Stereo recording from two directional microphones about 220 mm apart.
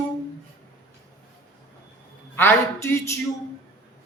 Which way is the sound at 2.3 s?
10° left (ahead or behind).